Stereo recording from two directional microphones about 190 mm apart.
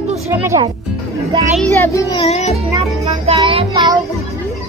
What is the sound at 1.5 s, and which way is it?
Speech, 10° left (ahead or behind).